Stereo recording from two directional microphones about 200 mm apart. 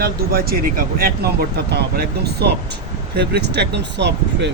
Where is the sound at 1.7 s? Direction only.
55° right (ahead or behind).